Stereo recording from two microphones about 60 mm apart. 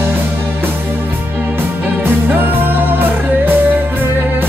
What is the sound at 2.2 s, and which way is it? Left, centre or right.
Music, right.